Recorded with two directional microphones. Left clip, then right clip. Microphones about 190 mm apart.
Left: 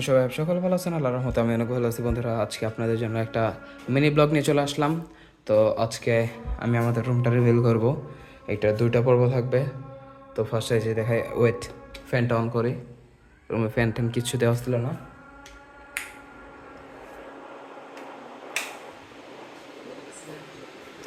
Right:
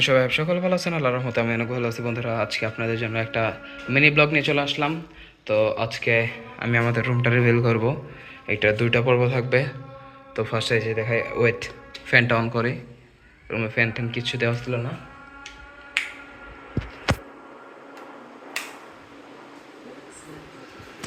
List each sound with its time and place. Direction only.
0.0 s speech: 15° left (ahead or behind)
1.3 s speech: 30° left (ahead or behind)
6.7 s speech: 15° left (ahead or behind)
9.5 s speech: 10° left (ahead or behind)
10.8 s speech: 30° left (ahead or behind)
12.1 s speech: 15° left (ahead or behind)
13.5 s speech: 35° left (ahead or behind)